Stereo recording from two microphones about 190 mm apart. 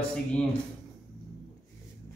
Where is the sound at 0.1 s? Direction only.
5° left (ahead or behind).